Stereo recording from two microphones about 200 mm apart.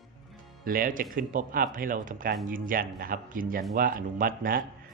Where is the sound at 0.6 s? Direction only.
45° right (ahead or behind).